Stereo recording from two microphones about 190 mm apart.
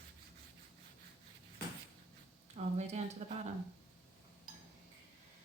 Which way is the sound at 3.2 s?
35° right (ahead or behind).